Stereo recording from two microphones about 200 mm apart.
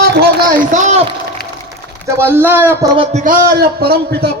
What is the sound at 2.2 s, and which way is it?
Speech, 10° right (ahead or behind).